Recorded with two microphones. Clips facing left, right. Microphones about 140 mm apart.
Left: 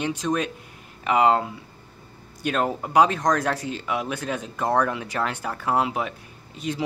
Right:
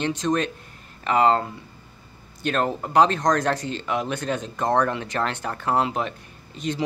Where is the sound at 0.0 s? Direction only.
5° left (ahead or behind).